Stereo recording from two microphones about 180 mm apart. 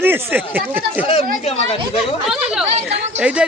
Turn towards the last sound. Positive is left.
turn(degrees=-5)  # may be behind; listen again after turning